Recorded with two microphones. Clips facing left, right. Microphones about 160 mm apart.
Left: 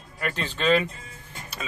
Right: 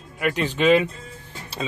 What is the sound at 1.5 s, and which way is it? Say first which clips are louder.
Speech: right 8 dB; 30° right (ahead or behind).